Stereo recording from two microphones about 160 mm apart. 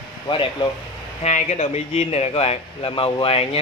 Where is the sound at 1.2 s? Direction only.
45° left (ahead or behind).